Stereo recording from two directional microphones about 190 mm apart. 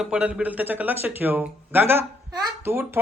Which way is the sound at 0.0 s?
5° right (ahead or behind).